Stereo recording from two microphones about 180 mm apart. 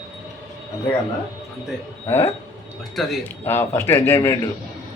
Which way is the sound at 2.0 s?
15° left (ahead or behind).